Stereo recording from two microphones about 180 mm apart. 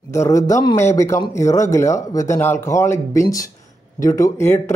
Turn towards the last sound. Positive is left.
turn(degrees=15)  # may be behind; listen again after turning